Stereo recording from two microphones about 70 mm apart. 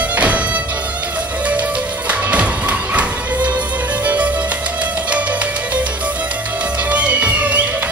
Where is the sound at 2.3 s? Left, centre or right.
Centre.